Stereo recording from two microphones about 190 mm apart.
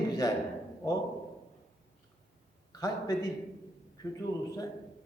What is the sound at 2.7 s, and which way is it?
Speech, 20° left (ahead or behind).